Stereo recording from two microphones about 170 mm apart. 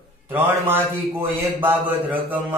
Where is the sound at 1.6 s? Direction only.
10° right (ahead or behind).